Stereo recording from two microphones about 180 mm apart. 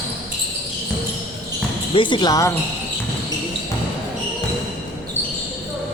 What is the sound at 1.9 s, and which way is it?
Speech, 25° left (ahead or behind).